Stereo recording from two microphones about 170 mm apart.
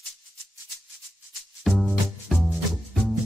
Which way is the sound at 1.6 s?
Centre (ahead or behind).